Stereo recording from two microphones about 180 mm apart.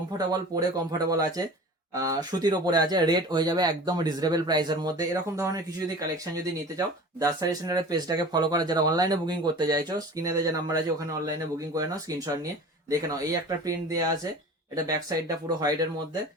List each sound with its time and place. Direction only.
0.9 s speech: 20° right (ahead or behind)